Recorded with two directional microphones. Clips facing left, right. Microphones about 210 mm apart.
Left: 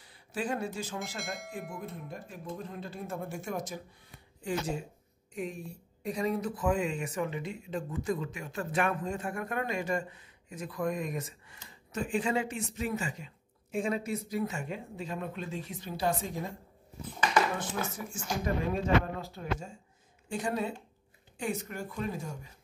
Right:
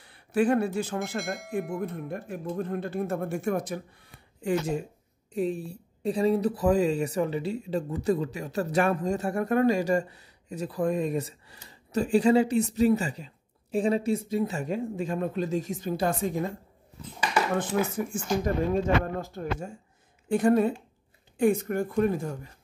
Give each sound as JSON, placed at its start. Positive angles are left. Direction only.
{"t": 0.0, "sound": "speech", "side_deg": -60}
{"t": 1.2, "sound": "speech", "side_deg": 0}
{"t": 1.8, "sound": "speech", "side_deg": -60}
{"t": 5.3, "sound": "speech", "side_deg": -35}
{"t": 17.9, "sound": "speech", "side_deg": -50}
{"t": 20.2, "sound": "speech", "side_deg": -55}